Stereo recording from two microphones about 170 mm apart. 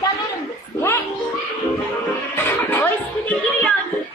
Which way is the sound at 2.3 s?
10° left (ahead or behind).